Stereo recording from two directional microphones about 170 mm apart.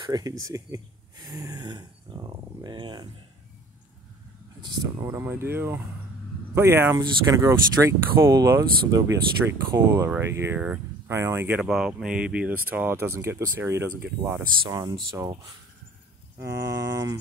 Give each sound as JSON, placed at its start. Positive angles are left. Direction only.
{"t": 0.0, "sound": "speech", "side_deg": -25}
{"t": 4.6, "sound": "speech", "side_deg": -25}
{"t": 14.6, "sound": "speech", "side_deg": -25}